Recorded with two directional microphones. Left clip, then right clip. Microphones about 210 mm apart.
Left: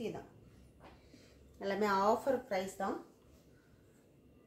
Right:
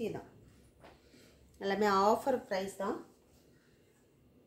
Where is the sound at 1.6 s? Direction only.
45° right (ahead or behind).